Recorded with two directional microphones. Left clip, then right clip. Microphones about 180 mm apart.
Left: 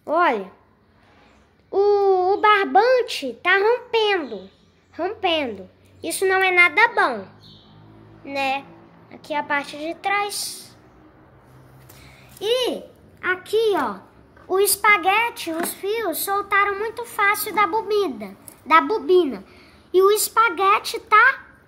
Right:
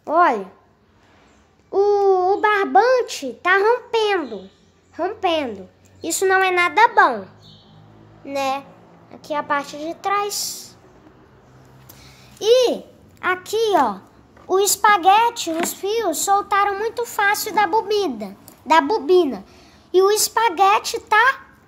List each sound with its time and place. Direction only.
0.0 s speech: 5° right (ahead or behind)
1.7 s a child's voice: 5° right (ahead or behind)
8.3 s speech: 10° right (ahead or behind)
12.4 s a child's voice: 15° right (ahead or behind)